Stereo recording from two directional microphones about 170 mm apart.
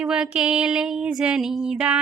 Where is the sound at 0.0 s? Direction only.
5° right (ahead or behind).